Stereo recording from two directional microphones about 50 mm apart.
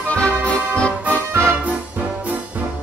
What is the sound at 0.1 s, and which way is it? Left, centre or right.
Accordion, left.